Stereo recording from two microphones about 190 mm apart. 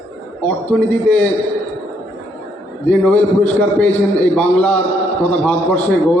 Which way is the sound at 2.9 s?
5° left (ahead or behind).